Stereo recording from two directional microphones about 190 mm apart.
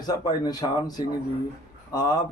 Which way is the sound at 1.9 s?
20° left (ahead or behind).